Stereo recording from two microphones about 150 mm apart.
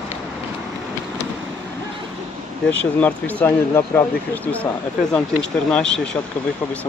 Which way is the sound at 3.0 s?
10° left (ahead or behind).